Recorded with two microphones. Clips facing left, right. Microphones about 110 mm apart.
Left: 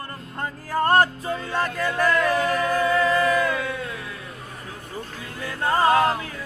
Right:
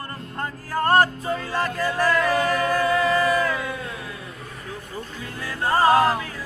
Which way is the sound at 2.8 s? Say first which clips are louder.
Left 1 dB; 35° right (ahead or behind).